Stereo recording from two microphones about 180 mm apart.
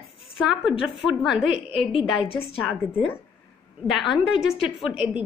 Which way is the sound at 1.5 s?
30° left (ahead or behind).